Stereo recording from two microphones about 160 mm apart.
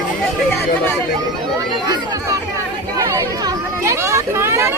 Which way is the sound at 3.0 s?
20° right (ahead or behind).